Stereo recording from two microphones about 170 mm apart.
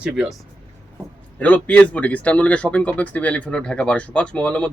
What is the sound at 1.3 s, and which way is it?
Speech, 10° left (ahead or behind).